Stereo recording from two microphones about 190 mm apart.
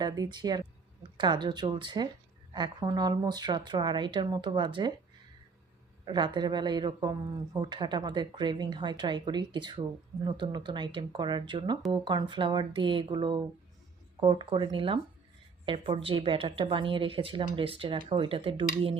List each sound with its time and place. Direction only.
0.0 s speech: 20° right (ahead or behind)
6.1 s speech: 25° right (ahead or behind)